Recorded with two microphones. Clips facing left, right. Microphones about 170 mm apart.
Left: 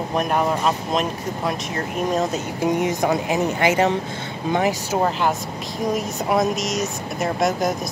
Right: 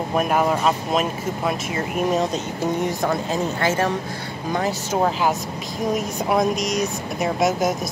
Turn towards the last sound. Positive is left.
turn(degrees=0)  # may be behind; listen again after turning